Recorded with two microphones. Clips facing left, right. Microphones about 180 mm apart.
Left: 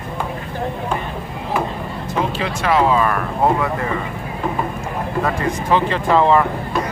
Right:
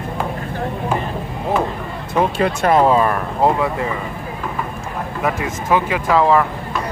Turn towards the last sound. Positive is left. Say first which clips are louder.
# even
turn(degrees=0)  # may be behind; listen again after turning